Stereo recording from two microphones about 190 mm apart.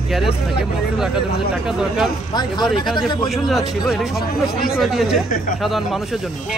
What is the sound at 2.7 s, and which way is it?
Speech, centre (ahead or behind).